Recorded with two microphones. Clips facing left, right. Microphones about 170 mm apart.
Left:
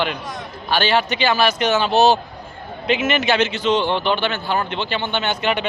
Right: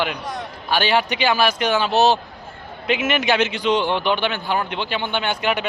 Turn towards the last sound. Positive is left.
turn(degrees=-5)  # may be behind; listen again after turning